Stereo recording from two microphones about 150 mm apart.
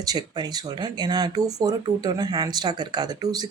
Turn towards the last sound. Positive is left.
turn(degrees=-25)  # may be behind; listen again after turning